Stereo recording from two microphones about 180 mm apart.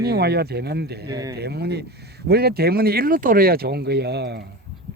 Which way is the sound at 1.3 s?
65° right (ahead or behind).